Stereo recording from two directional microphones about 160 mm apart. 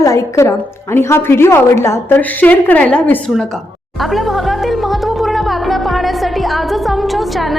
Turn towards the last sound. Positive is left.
turn(degrees=0)  # may be behind; listen again after turning